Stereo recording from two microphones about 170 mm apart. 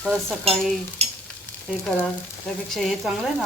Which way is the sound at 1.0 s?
40° right (ahead or behind).